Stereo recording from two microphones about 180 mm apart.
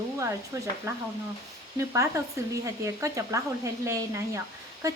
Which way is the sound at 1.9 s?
15° right (ahead or behind).